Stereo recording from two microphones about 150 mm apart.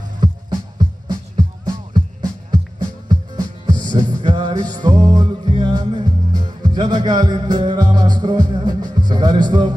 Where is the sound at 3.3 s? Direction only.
30° right (ahead or behind).